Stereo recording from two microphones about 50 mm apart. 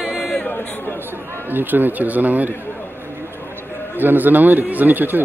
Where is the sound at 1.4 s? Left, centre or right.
Right.